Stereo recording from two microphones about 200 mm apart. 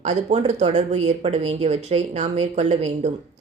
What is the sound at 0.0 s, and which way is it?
A woman's voice, 30° right (ahead or behind).